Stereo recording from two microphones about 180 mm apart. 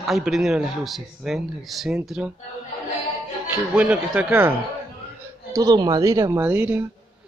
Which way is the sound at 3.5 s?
5° right (ahead or behind).